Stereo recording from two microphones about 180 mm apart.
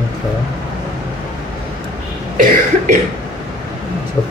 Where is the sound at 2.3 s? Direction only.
45° right (ahead or behind).